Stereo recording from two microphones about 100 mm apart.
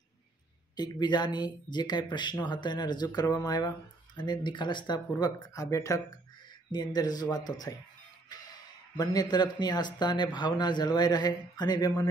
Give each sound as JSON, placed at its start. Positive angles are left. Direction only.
{"t": 0.7, "sound": "speech", "side_deg": 45}
{"t": 8.9, "sound": "speech", "side_deg": 40}